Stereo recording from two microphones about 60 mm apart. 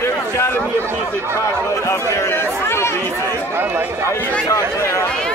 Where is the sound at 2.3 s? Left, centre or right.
Left.